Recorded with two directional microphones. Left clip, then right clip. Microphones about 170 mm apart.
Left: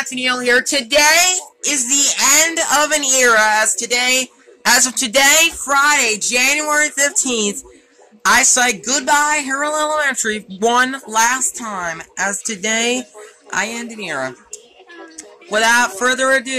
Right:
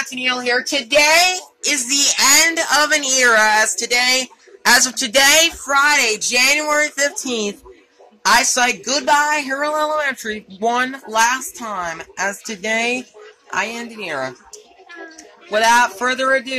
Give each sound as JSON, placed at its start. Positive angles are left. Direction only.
{"t": 0.1, "sound": "speech", "side_deg": 35}
{"t": 1.6, "sound": "a woman's voice", "side_deg": 10}
{"t": 6.8, "sound": "a woman's voice", "side_deg": 20}
{"t": 15.5, "sound": "a woman's voice", "side_deg": 20}